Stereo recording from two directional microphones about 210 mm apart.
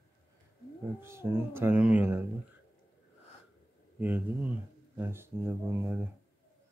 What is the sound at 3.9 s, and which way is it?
Speech, 10° right (ahead or behind).